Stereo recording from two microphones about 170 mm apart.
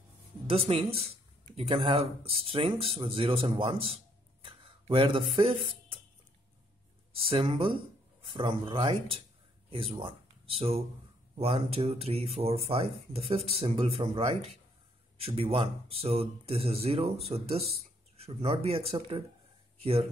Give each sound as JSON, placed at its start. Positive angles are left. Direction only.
{"t": 0.5, "sound": "speech", "side_deg": -35}
{"t": 7.2, "sound": "speech", "side_deg": -35}